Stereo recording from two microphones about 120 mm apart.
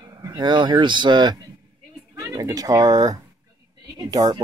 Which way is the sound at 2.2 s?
25° right (ahead or behind).